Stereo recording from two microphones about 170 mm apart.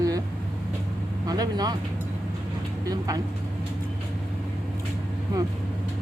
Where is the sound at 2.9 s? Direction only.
20° right (ahead or behind).